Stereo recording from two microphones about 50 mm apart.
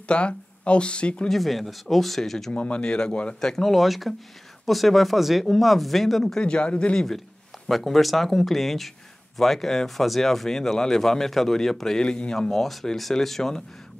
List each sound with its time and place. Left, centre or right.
0.1 s speech: left
1.3 s speech: centre
2.5 s speech: left
3.3 s speech: centre
6.4 s speech: left
7.6 s speech: centre
12.4 s speech: centre